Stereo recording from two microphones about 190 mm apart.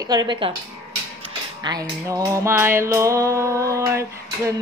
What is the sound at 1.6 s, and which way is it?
Music, 20° right (ahead or behind).